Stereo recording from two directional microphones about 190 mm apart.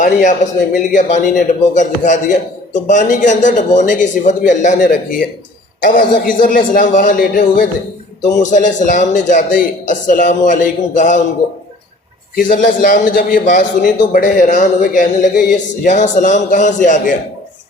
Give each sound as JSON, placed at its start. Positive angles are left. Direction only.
{"t": 0.0, "sound": "a man's voice", "side_deg": 40}
{"t": 12.4, "sound": "a man's voice", "side_deg": 45}